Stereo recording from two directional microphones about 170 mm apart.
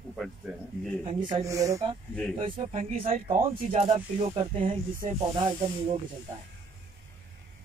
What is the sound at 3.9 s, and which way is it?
Speech, 35° right (ahead or behind).